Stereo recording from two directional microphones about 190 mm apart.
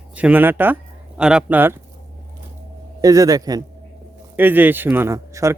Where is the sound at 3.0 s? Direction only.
20° right (ahead or behind).